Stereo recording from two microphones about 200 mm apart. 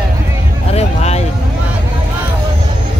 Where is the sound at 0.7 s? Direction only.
30° left (ahead or behind).